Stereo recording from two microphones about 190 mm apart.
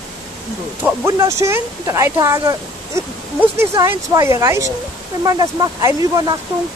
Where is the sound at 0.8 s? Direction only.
15° right (ahead or behind).